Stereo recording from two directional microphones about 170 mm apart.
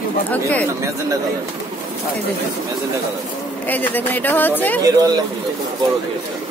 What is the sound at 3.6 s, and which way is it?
Speech, 10° left (ahead or behind).